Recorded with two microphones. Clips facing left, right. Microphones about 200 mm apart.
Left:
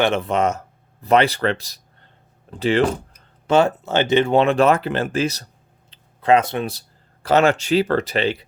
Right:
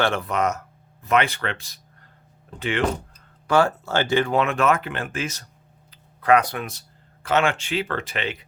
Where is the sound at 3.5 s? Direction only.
20° left (ahead or behind).